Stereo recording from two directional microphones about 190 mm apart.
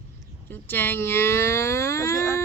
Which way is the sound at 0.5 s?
10° left (ahead or behind).